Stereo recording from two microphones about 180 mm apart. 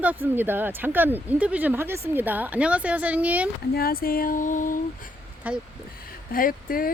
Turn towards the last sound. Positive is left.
turn(degrees=55)  # may be behind; listen again after turning